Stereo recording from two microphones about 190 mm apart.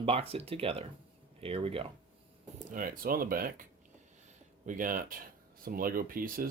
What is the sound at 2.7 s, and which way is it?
Speech, 45° right (ahead or behind).